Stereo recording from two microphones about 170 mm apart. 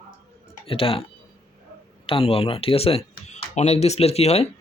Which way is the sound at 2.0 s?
35° left (ahead or behind).